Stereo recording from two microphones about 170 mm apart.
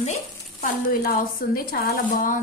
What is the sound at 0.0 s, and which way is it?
Speech, 45° left (ahead or behind).